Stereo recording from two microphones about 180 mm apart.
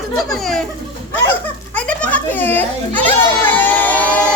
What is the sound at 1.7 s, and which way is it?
Children playing, 5° left (ahead or behind).